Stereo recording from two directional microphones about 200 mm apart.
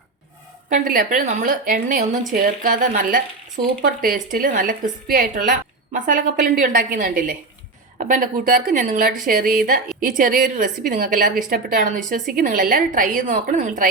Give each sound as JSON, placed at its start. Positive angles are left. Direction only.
{"t": 0.7, "sound": "a woman's voice", "side_deg": -45}